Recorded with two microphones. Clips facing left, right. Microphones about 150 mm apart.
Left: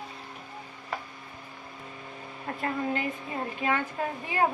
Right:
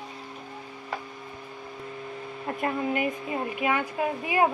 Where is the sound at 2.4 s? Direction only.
20° right (ahead or behind).